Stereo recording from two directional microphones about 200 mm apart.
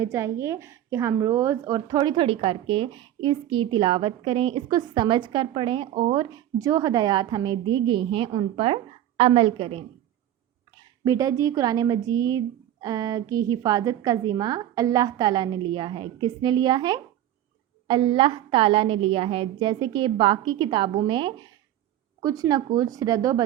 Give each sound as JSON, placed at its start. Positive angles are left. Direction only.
{"t": 0.0, "sound": "a woman's voice", "side_deg": -15}